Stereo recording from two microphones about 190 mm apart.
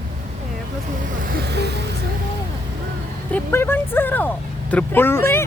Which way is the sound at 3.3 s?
10° left (ahead or behind).